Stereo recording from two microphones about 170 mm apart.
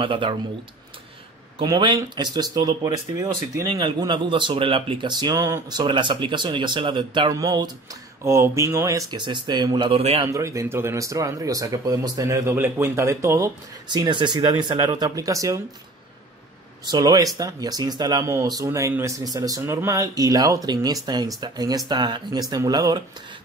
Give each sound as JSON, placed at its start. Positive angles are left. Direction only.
{"t": 0.0, "sound": "speech", "side_deg": -30}
{"t": 1.6, "sound": "speech", "side_deg": -25}
{"t": 10.3, "sound": "speech", "side_deg": -20}
{"t": 16.8, "sound": "speech", "side_deg": -25}